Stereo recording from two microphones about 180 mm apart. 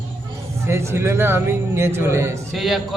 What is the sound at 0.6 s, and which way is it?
Speech, 15° right (ahead or behind).